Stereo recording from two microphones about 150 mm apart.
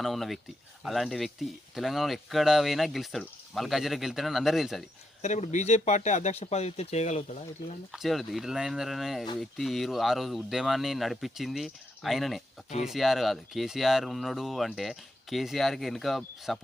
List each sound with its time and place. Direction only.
0.0 s speech: centre (ahead or behind)
5.2 s speech: 50° left (ahead or behind)
7.9 s speech: centre (ahead or behind)